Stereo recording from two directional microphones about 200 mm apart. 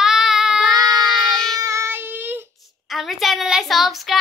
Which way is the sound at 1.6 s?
15° right (ahead or behind).